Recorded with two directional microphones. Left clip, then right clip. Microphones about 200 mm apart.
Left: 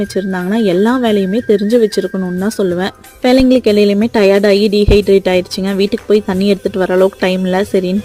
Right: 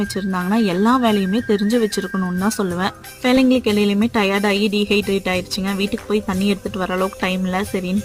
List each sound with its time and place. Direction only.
0.5 s speech: 10° left (ahead or behind)